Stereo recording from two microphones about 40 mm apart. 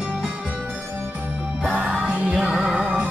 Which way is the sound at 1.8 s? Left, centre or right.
Centre.